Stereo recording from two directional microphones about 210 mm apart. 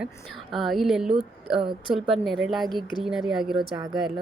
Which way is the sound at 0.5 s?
Centre (ahead or behind).